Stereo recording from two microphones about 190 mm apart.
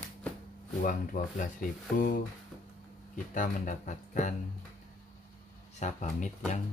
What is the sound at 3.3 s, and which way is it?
Speech, 45° left (ahead or behind).